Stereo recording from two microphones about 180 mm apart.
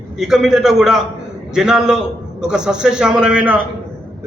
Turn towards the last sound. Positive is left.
turn(degrees=-5)  # may be behind; listen again after turning